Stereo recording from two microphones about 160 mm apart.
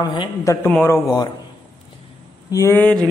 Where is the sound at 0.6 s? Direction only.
15° left (ahead or behind).